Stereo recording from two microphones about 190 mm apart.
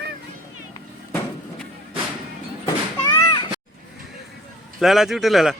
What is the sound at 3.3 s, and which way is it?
Cat, 25° left (ahead or behind).